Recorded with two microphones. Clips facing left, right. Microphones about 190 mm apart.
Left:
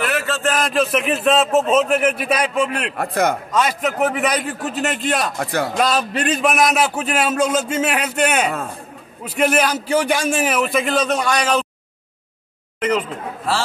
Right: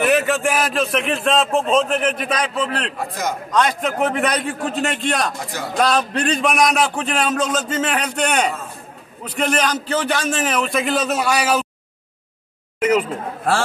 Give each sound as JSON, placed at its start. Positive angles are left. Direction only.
{"t": 0.0, "sound": "a man's voice", "side_deg": -20}
{"t": 3.0, "sound": "a man's voice", "side_deg": 60}
{"t": 3.5, "sound": "a man's voice", "side_deg": 5}
{"t": 5.4, "sound": "a man's voice", "side_deg": 60}
{"t": 5.8, "sound": "a man's voice", "side_deg": 5}
{"t": 12.8, "sound": "speech", "side_deg": -10}